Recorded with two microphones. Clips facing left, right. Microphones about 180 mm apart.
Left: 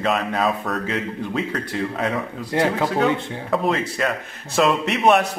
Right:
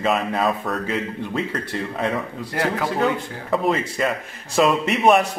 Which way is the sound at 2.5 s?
25° left (ahead or behind).